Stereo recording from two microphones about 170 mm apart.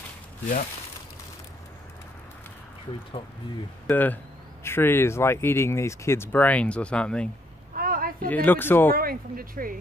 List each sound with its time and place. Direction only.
3.8 s speech: 10° left (ahead or behind)
7.7 s a sound: 60° right (ahead or behind)
8.3 s speech: 10° left (ahead or behind)
8.9 s speech: 60° right (ahead or behind)